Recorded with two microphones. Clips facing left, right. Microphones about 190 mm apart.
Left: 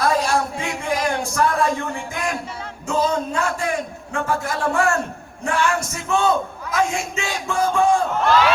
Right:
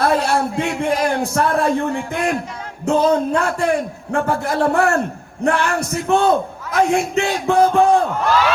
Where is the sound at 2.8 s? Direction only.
60° right (ahead or behind).